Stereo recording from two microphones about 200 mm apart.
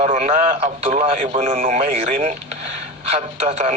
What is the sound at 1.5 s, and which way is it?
A man's voice, 45° right (ahead or behind).